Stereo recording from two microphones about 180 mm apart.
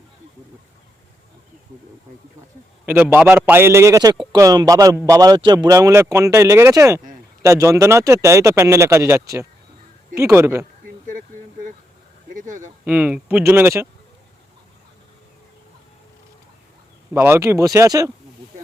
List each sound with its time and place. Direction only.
2.8 s speech: 10° right (ahead or behind)
10.8 s a sound: 50° right (ahead or behind)
12.3 s speech: 45° right (ahead or behind)
12.8 s speech: 10° right (ahead or behind)
17.2 s speech: 15° right (ahead or behind)